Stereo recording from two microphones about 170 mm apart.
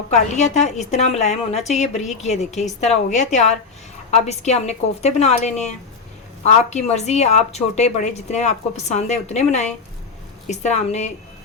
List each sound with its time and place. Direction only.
0.1 s a woman's voice: 45° left (ahead or behind)